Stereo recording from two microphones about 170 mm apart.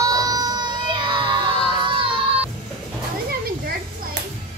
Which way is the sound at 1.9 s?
30° right (ahead or behind).